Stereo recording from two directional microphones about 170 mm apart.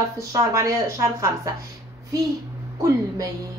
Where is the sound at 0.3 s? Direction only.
20° right (ahead or behind).